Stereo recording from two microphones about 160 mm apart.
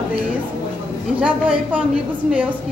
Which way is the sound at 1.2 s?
10° right (ahead or behind).